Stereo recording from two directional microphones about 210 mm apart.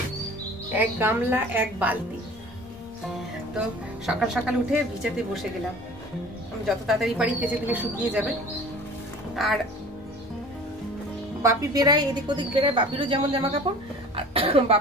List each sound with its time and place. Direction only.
0.7 s speech: 10° right (ahead or behind)
3.5 s speech: 5° right (ahead or behind)
6.7 s speech: centre (ahead or behind)
9.3 s speech: centre (ahead or behind)
11.4 s a woman's voice: 20° right (ahead or behind)